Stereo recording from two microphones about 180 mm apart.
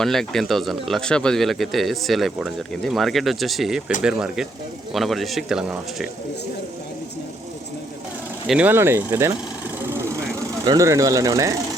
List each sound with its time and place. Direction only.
0.0 s speech: centre (ahead or behind)
8.4 s speech: 10° right (ahead or behind)
9.9 s vehicle: 15° right (ahead or behind)
10.7 s speech: 15° right (ahead or behind)